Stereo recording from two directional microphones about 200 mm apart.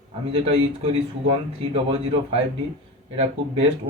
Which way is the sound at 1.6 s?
30° right (ahead or behind).